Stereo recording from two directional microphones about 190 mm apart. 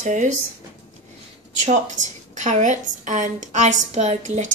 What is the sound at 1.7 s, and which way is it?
A woman's voice, 40° right (ahead or behind).